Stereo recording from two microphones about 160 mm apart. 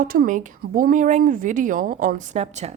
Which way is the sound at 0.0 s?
65° right (ahead or behind).